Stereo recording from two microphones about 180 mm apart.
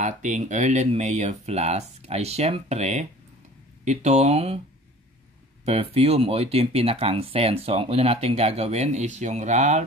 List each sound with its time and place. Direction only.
0.0 s speech: 45° right (ahead or behind)
5.7 s speech: 35° right (ahead or behind)